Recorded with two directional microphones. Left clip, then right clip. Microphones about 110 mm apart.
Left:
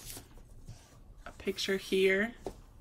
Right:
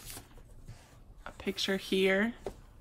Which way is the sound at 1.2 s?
30° right (ahead or behind).